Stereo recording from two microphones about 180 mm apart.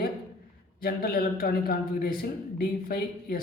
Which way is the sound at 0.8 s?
55° left (ahead or behind).